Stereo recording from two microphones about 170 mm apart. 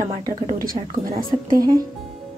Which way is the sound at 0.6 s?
60° right (ahead or behind).